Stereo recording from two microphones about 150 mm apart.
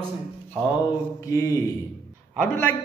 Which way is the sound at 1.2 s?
20° left (ahead or behind).